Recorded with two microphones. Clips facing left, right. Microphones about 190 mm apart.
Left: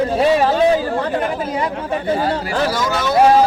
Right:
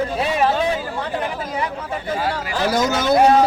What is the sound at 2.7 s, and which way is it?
Speech, 45° right (ahead or behind).